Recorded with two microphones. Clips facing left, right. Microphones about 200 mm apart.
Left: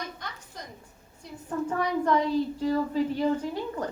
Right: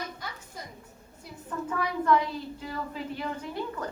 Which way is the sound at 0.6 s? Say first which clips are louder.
Even; 5° right (ahead or behind).